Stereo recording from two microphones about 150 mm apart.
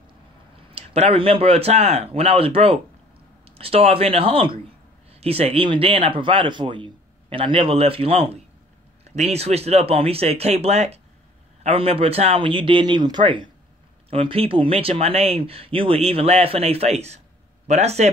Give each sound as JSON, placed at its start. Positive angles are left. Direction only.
{"t": 0.7, "sound": "speech", "side_deg": -40}